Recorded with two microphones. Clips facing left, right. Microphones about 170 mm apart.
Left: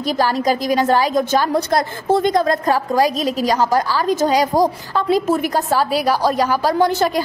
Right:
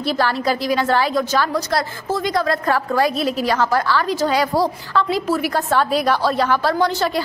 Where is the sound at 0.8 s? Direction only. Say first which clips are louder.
Left 2 dB; 15° left (ahead or behind).